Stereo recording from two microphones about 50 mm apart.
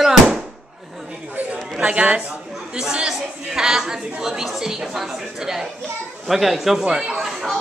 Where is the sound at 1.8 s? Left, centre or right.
Centre.